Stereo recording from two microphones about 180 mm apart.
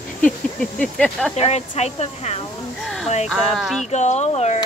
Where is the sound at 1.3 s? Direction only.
40° left (ahead or behind).